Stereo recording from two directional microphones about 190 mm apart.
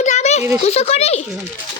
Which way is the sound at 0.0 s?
40° left (ahead or behind).